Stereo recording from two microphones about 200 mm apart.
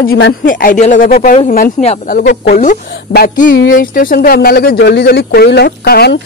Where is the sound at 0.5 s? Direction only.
45° left (ahead or behind).